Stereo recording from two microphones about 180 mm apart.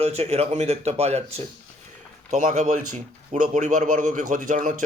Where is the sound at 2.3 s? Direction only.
40° right (ahead or behind).